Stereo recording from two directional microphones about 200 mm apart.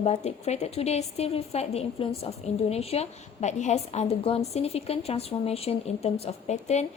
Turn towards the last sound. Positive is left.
turn(degrees=35)  # may be behind; listen again after turning